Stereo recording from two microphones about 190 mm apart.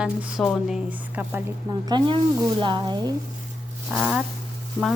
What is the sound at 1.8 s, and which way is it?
Speech, 20° right (ahead or behind).